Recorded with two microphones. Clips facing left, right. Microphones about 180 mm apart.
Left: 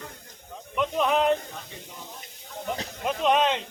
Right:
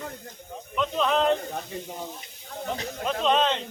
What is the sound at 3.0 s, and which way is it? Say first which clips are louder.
Speech: left 1 dB; 10° left (ahead or behind).